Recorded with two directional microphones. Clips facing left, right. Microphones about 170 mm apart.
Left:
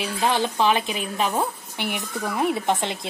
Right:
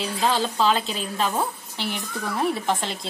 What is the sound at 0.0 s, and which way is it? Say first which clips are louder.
A woman's voice: left 1 dB; 15° left (ahead or behind).